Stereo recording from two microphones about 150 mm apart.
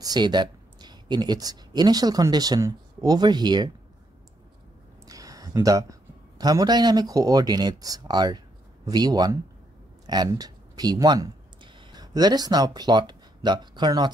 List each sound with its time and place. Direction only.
0.0 s speech: 30° right (ahead or behind)
5.0 s speech: 25° right (ahead or behind)